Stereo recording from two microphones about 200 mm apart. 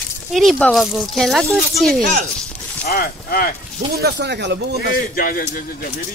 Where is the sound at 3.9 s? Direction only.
55° right (ahead or behind).